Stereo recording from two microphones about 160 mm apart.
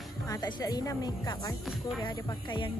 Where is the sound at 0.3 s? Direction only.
25° left (ahead or behind).